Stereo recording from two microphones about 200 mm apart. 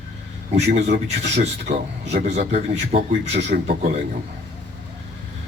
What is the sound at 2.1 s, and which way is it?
A man's voice, 35° right (ahead or behind).